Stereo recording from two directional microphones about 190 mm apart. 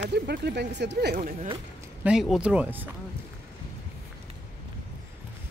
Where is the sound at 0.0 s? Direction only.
60° right (ahead or behind).